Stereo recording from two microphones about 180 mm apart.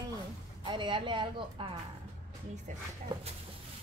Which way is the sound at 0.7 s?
25° right (ahead or behind).